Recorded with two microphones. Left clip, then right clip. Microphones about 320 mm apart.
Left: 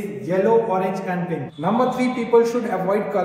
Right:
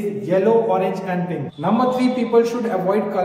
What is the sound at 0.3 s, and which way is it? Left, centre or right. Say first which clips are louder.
A man's voice: right 1 dB; centre.